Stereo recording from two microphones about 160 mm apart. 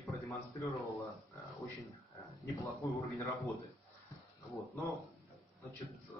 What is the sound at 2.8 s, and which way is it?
Speech, centre (ahead or behind).